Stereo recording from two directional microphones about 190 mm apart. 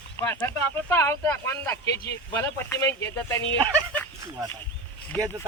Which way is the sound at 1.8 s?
60° left (ahead or behind).